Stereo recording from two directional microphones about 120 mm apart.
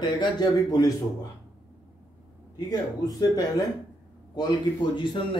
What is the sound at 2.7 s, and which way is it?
A man's voice, 35° left (ahead or behind).